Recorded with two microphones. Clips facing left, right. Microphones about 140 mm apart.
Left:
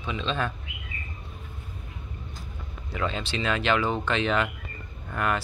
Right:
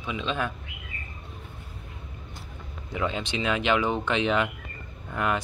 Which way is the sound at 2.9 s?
15° right (ahead or behind).